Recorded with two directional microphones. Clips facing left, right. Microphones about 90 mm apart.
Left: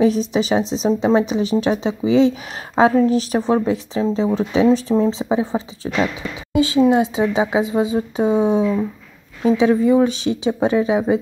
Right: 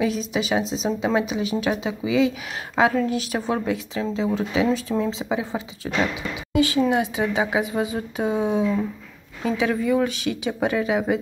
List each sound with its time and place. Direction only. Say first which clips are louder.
0.0 s a woman's voice: left 7 dB; 35° left (ahead or behind)